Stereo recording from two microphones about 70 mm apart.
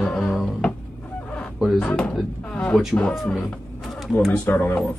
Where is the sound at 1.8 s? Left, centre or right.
Centre.